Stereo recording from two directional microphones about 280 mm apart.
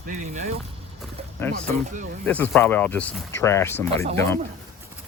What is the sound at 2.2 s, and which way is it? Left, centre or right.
Speech, centre.